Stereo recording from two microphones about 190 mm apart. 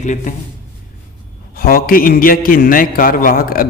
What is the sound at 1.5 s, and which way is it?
A man's voice, 50° left (ahead or behind).